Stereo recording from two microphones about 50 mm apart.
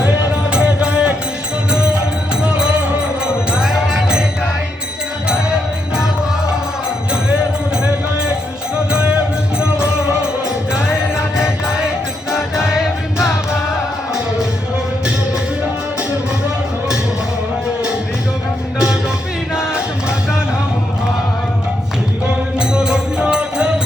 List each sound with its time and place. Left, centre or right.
0.5 s music: centre
2.4 s music: centre
7.1 s music: centre
8.7 s music: centre
12.5 s music: centre
19.5 s music: centre
22.5 s music: centre